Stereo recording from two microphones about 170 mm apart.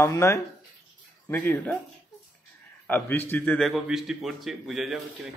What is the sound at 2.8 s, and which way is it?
A man's voice, 10° left (ahead or behind).